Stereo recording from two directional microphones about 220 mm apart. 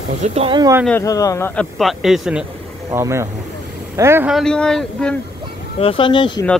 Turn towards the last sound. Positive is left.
turn(degrees=20)  # may be behind; listen again after turning